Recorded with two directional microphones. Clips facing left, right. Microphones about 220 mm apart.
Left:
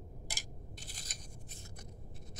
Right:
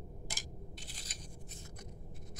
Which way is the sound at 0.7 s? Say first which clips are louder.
Right 1 dB; 45° left (ahead or behind).